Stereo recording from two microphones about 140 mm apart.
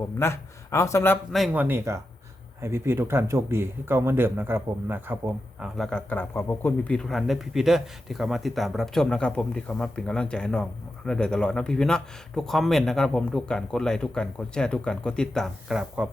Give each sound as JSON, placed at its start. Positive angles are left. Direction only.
{"t": 0.2, "sound": "speech", "side_deg": 20}
{"t": 1.5, "sound": "speech", "side_deg": -15}
{"t": 5.6, "sound": "a man's voice", "side_deg": 0}
{"t": 6.1, "sound": "a man's voice", "side_deg": 15}